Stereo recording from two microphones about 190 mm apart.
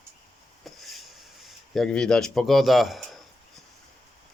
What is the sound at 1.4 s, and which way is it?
Speech, centre (ahead or behind).